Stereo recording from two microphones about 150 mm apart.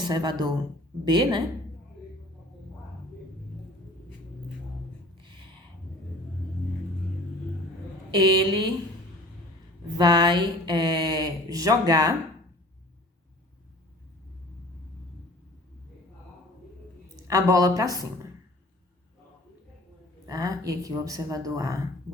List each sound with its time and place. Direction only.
0.0 s speech: 30° right (ahead or behind)
8.2 s speech: 30° right (ahead or behind)
10.0 s speech: 30° right (ahead or behind)
17.2 s speech: 25° right (ahead or behind)
20.2 s speech: 25° right (ahead or behind)